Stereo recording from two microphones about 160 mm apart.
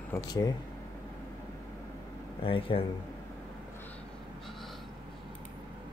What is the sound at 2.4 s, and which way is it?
Speech, 35° left (ahead or behind).